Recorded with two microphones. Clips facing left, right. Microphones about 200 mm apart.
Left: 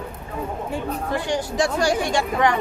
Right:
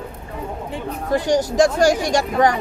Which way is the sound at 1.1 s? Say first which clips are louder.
Right 8 dB; 40° right (ahead or behind).